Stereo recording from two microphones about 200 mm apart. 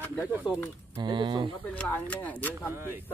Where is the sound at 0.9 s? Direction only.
25° right (ahead or behind).